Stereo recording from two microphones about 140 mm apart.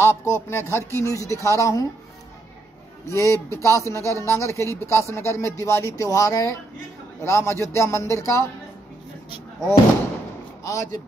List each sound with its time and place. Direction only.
0.0 s speech: 20° left (ahead or behind)
3.1 s speech: 20° left (ahead or behind)
10.6 s speech: 25° left (ahead or behind)